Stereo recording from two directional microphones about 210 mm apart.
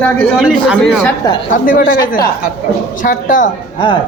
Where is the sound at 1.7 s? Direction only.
40° left (ahead or behind).